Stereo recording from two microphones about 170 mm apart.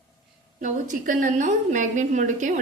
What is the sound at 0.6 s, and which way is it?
A woman's voice, 50° right (ahead or behind).